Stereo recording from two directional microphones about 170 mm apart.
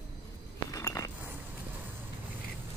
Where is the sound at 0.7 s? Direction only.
20° left (ahead or behind).